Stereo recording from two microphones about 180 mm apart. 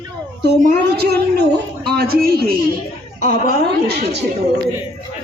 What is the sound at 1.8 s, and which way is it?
Speech, 60° right (ahead or behind).